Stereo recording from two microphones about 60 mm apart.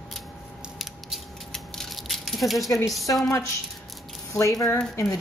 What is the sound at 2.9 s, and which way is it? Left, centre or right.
Speech, centre.